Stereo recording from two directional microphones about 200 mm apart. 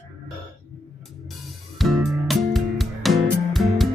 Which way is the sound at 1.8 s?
Centre (ahead or behind).